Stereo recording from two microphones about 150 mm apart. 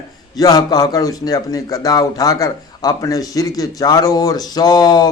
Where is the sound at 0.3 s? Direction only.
25° left (ahead or behind).